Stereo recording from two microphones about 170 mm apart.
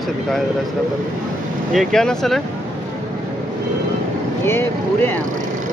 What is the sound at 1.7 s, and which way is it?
Speech, centre (ahead or behind).